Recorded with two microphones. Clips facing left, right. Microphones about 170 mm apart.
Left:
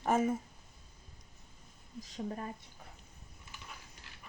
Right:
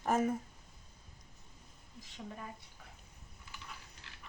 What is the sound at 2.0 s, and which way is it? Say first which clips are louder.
Speech: left 7 dB; 40° left (ahead or behind).